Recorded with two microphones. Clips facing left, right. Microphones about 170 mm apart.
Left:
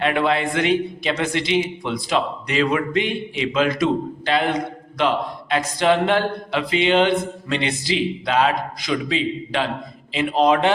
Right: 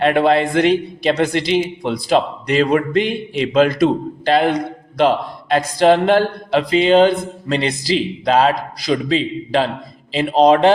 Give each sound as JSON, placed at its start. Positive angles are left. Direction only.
{"t": 0.0, "sound": "a man's voice", "side_deg": -40}
{"t": 4.9, "sound": "a man's voice", "side_deg": -40}